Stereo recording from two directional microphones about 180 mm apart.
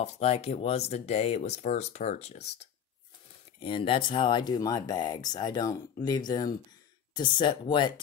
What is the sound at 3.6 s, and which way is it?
Speech, 30° left (ahead or behind).